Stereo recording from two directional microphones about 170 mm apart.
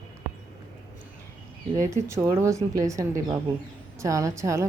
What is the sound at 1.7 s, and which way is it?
A woman's voice, 15° right (ahead or behind).